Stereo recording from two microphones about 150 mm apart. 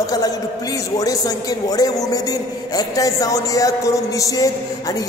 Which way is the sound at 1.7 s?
25° left (ahead or behind).